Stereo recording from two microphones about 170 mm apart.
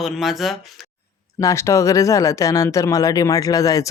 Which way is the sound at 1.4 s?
15° left (ahead or behind).